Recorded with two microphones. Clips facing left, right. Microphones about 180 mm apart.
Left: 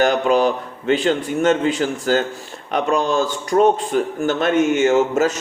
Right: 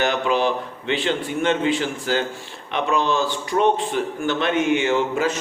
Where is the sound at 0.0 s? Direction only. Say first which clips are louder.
Left 5 dB; 45° left (ahead or behind).